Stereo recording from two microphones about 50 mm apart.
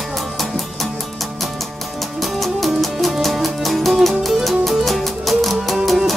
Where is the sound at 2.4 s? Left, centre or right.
Centre.